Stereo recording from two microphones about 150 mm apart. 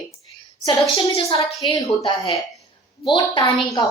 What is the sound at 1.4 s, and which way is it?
A woman's voice, 25° left (ahead or behind).